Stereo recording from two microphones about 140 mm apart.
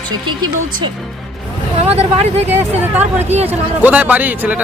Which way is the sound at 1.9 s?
50° right (ahead or behind).